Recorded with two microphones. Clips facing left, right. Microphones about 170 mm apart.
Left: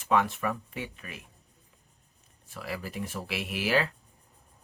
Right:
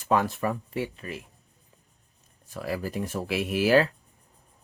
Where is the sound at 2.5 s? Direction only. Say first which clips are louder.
Right 6 dB; 40° right (ahead or behind).